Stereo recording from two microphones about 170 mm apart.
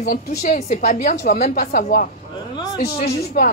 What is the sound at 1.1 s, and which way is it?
A woman's voice, 60° left (ahead or behind).